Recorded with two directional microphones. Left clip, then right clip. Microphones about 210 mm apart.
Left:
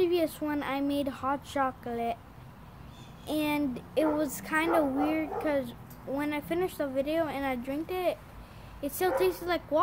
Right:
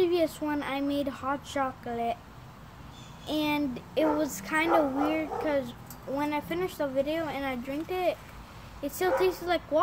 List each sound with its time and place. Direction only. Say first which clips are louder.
0.0 s a child's voice: right 1 dB; 15° left (ahead or behind)
3.3 s a child's voice: right 1 dB; 15° left (ahead or behind)